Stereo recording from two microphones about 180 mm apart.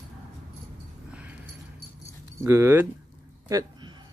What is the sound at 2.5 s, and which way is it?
Speech, 15° right (ahead or behind).